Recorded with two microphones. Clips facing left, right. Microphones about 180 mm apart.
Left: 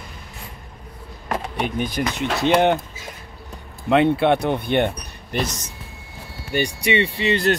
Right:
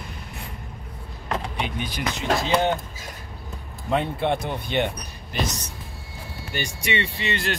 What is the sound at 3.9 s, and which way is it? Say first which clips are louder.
Speech: left 7 dB; 75° left (ahead or behind).